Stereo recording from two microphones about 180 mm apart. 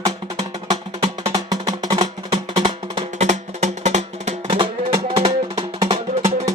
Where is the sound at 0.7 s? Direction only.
20° right (ahead or behind); by 4.4 s 40° right (ahead or behind).